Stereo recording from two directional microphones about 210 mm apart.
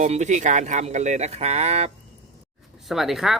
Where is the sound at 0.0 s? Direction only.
35° right (ahead or behind).